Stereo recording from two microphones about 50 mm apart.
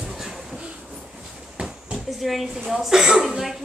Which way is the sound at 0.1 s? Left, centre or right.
Centre.